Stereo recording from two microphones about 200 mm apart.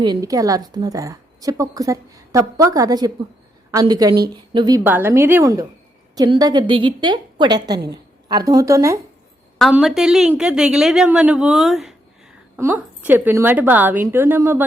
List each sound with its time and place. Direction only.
0.0 s a woman's voice: 20° right (ahead or behind)
4.8 s a woman's voice: 10° right (ahead or behind)
9.6 s a woman's voice: centre (ahead or behind)